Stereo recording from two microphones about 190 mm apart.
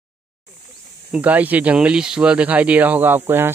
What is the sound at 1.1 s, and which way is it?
Speech, 10° right (ahead or behind).